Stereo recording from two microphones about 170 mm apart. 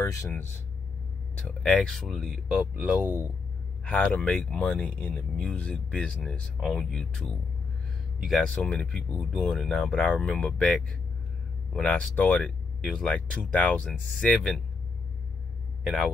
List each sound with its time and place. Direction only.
0.0 s speech: 20° left (ahead or behind)
1.6 s speech: 5° left (ahead or behind); by 3.3 s 10° right (ahead or behind)
3.8 s speech: 10° left (ahead or behind)
15.8 s speech: centre (ahead or behind)